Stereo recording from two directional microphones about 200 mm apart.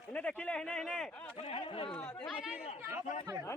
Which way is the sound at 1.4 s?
30° left (ahead or behind).